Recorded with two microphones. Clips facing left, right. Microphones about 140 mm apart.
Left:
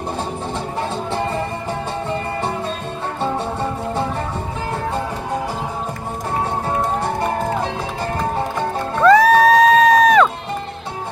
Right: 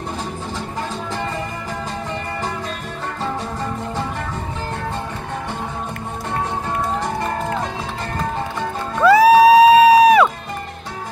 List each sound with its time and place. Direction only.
1.1 s music: 30° left (ahead or behind)
9.0 s music: 10° right (ahead or behind)